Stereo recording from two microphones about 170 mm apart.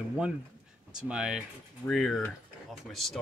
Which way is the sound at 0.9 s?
5° right (ahead or behind).